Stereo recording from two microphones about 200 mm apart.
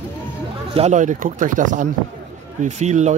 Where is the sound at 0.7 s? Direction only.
35° right (ahead or behind).